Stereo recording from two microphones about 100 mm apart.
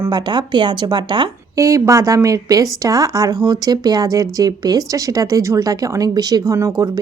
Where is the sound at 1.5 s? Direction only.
30° right (ahead or behind).